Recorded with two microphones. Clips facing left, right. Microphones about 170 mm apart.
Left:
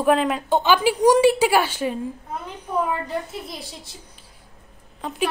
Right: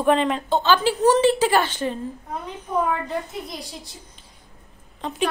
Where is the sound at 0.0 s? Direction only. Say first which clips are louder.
Even; 5° left (ahead or behind).